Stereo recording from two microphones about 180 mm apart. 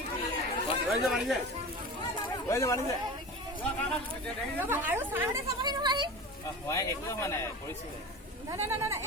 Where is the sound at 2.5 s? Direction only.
15° left (ahead or behind).